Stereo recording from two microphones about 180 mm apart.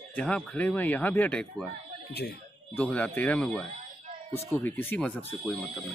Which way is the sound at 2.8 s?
10° left (ahead or behind).